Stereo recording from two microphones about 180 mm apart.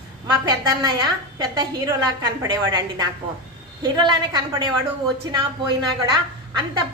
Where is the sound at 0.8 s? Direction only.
25° right (ahead or behind).